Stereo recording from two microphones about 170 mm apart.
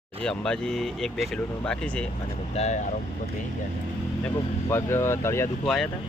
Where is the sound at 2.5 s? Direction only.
45° left (ahead or behind).